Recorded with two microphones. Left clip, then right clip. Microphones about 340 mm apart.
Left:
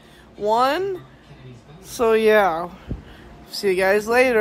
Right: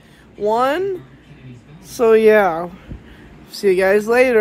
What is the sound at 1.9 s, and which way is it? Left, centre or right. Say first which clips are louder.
Speech: right 4 dB; centre.